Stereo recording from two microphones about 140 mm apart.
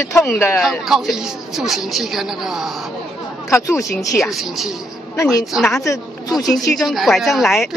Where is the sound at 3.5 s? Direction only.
20° left (ahead or behind).